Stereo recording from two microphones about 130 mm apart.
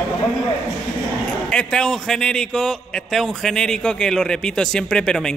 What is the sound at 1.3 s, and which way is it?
A man's voice, 5° left (ahead or behind).